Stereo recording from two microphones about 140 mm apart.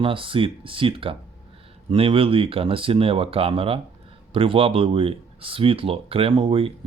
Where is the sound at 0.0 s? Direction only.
40° right (ahead or behind).